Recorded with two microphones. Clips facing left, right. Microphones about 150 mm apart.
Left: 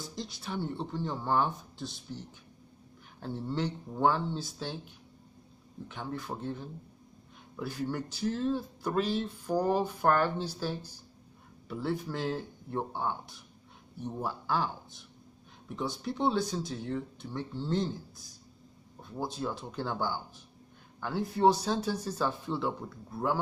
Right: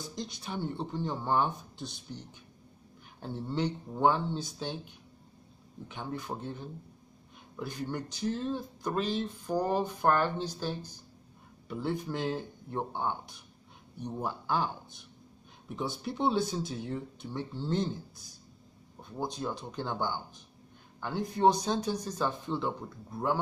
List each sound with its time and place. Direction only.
0.0 s speech: centre (ahead or behind)
3.4 s speech: centre (ahead or behind)
5.9 s speech: centre (ahead or behind)
7.5 s speech: 5° left (ahead or behind)
15.7 s speech: 5° right (ahead or behind)